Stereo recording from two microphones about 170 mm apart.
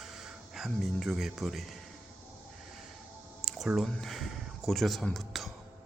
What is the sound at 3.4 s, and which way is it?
Speech, centre (ahead or behind).